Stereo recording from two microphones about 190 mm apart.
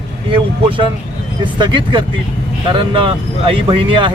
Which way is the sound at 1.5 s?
25° right (ahead or behind).